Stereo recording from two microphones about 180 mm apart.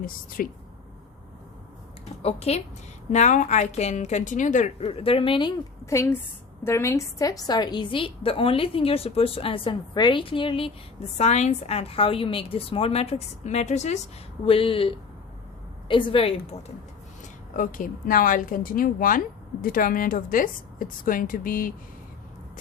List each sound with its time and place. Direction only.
0.0 s a woman's voice: 50° left (ahead or behind)
2.2 s a woman's voice: 35° left (ahead or behind)
11.2 s a woman's voice: 40° left (ahead or behind)
17.5 s a woman's voice: 45° left (ahead or behind)